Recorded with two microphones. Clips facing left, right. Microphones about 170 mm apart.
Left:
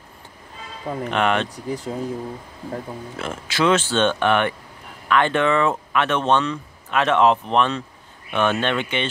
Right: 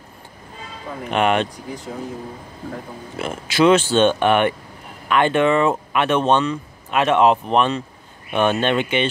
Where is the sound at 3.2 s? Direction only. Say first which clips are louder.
Right 5 dB; 15° right (ahead or behind).